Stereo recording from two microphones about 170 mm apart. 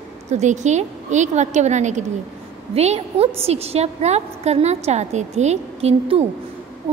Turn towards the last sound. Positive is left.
turn(degrees=-35)  # may be behind; listen again after turning